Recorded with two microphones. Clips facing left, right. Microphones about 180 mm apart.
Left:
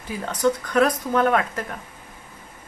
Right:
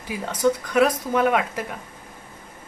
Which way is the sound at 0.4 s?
10° right (ahead or behind).